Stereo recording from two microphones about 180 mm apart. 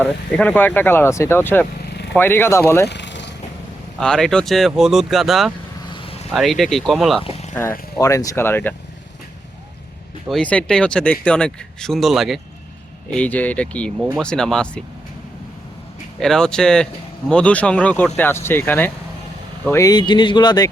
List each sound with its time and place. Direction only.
0.0 s speech: 10° left (ahead or behind)
1.8 s vehicle: 70° left (ahead or behind)
2.1 s speech: 10° left (ahead or behind)
2.8 s vehicle: 75° left (ahead or behind)
4.0 s speech: 5° left (ahead or behind)
5.9 s vehicle: 30° left (ahead or behind)
6.3 s speech: centre (ahead or behind)
7.2 s boat: 35° left (ahead or behind)
7.9 s speech: 20° left (ahead or behind)
10.2 s speech: 5° left (ahead or behind)
16.2 s speech: 5° left (ahead or behind); by 20.7 s 25° left (ahead or behind)